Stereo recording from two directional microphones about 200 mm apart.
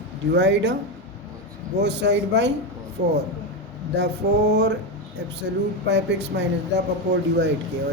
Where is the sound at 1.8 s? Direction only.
60° right (ahead or behind).